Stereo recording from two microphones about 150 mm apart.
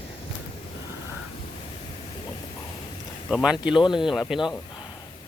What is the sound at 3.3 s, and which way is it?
Speech, 5° right (ahead or behind).